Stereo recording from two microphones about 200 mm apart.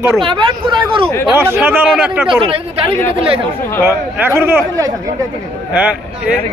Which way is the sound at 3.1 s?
30° right (ahead or behind).